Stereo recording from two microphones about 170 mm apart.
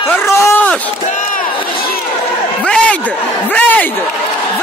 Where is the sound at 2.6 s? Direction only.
5° left (ahead or behind).